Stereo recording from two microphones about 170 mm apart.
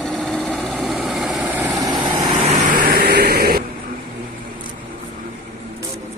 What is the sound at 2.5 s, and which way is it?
Vehicle, 50° right (ahead or behind).